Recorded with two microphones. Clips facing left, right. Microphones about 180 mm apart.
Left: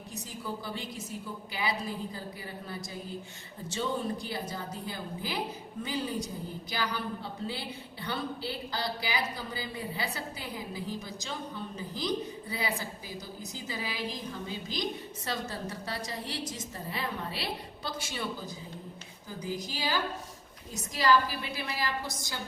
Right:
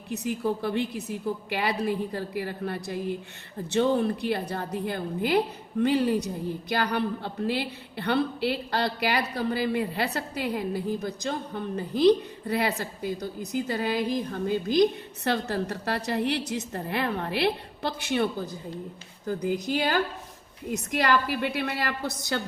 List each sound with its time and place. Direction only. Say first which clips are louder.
0.1 s a woman's voice: right 12 dB; 65° right (ahead or behind)